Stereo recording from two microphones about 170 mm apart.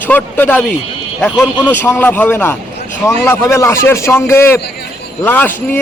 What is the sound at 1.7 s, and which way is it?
A man's voice, 10° left (ahead or behind).